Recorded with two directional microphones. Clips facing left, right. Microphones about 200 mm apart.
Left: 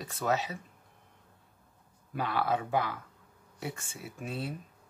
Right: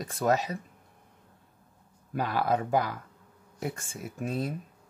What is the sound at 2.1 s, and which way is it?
Speech, 40° right (ahead or behind).